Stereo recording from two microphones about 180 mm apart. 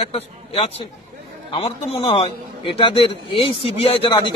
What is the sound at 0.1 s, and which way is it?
A man's voice, 35° left (ahead or behind).